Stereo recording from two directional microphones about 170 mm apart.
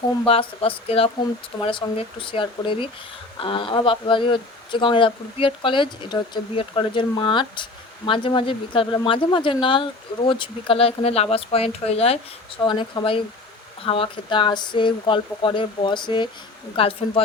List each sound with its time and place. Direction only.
0.3 s speech: 35° left (ahead or behind)